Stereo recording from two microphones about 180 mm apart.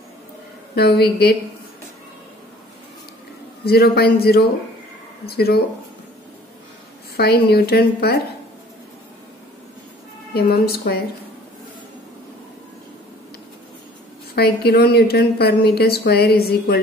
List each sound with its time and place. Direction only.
0.7 s a woman's voice: 60° left (ahead or behind)
3.6 s a woman's voice: 60° left (ahead or behind)
7.2 s a woman's voice: 60° left (ahead or behind)
10.3 s a woman's voice: 60° left (ahead or behind)
14.3 s a woman's voice: 60° left (ahead or behind)